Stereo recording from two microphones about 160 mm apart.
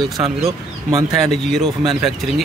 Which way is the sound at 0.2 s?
40° right (ahead or behind).